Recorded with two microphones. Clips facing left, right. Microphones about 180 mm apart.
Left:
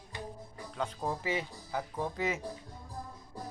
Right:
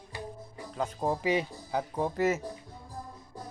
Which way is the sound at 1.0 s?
20° right (ahead or behind).